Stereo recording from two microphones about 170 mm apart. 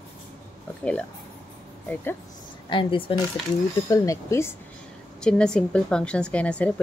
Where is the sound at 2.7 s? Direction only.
30° left (ahead or behind).